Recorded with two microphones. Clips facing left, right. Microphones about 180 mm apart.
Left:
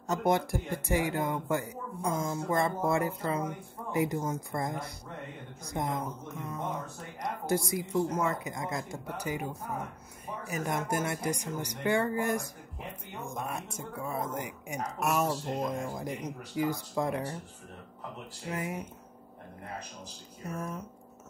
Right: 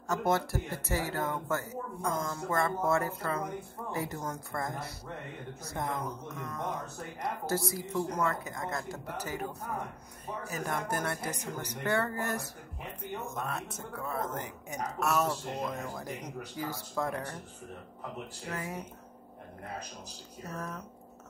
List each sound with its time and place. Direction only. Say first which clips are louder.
0.1 s speech: left 2 dB; 15° left (ahead or behind)
7.4 s speech: left 4 dB; 15° left (ahead or behind)
10.6 s speech: left 3 dB; 15° left (ahead or behind)
18.5 s speech: left 3 dB; 10° left (ahead or behind)
20.5 s speech: left 2 dB; 10° left (ahead or behind)